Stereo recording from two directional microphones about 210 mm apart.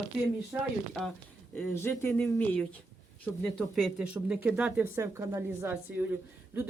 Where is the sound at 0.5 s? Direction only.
10° right (ahead or behind).